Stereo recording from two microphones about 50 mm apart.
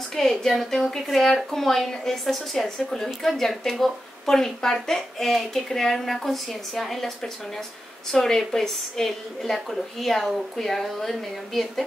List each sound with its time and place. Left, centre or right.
0.1 s a woman's voice: centre
8.1 s a woman's voice: centre